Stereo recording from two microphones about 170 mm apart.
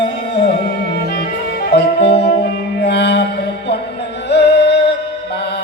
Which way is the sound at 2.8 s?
80° left.